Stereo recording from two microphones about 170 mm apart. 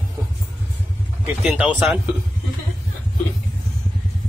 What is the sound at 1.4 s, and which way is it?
Speech, 5° right (ahead or behind).